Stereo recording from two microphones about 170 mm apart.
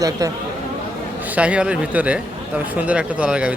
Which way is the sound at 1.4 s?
5° right (ahead or behind).